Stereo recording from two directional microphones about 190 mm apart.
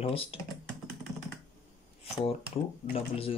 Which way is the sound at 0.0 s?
30° left (ahead or behind).